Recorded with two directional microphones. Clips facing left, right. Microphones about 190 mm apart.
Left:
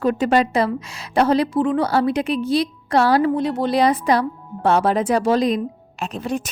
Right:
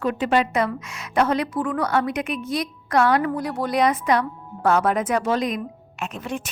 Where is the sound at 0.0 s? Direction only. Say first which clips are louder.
Left 4 dB; 40° left (ahead or behind).